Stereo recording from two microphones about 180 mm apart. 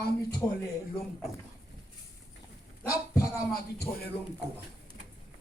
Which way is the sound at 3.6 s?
60° left (ahead or behind).